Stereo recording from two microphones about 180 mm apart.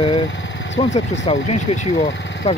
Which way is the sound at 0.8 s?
40° left (ahead or behind).